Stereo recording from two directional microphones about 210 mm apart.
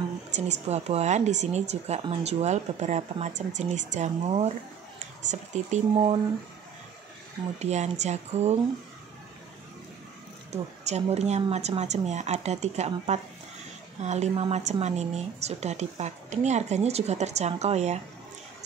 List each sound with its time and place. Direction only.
0.4 s speech: 30° right (ahead or behind)
7.5 s speech: 30° right (ahead or behind)
10.5 s speech: 30° right (ahead or behind)